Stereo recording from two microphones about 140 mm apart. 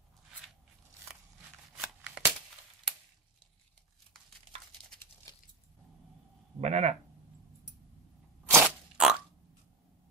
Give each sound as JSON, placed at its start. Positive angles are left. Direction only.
{"t": 1.8, "sound": "shuffling cards", "side_deg": -10}
{"t": 6.6, "sound": "speech", "side_deg": -50}
{"t": 8.5, "sound": "crunch", "side_deg": -10}